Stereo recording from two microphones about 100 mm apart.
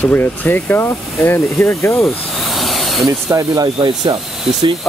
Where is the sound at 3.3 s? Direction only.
35° right (ahead or behind).